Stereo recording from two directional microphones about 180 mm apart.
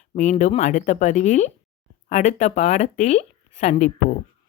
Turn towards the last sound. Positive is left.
turn(degrees=40)  # may be behind; listen again after turning